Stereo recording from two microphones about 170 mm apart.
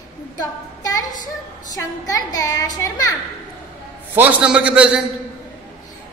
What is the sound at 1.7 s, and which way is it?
A woman's voice, 20° left (ahead or behind).